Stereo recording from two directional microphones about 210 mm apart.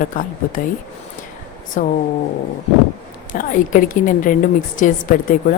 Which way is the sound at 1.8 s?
35° left (ahead or behind).